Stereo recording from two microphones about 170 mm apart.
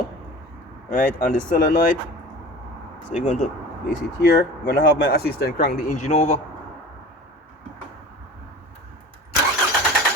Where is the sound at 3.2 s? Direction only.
45° left (ahead or behind).